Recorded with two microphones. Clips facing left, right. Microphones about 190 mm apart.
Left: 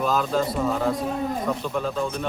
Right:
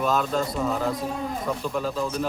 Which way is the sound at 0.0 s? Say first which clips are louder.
Left 1 dB; centre (ahead or behind).